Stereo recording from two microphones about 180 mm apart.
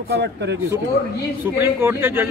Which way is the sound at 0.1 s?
70° right (ahead or behind).